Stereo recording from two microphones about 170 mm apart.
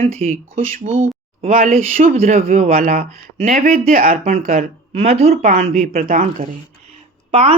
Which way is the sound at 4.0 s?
55° right (ahead or behind).